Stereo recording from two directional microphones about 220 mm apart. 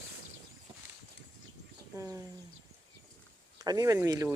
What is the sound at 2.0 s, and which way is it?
Bird, 15° right (ahead or behind).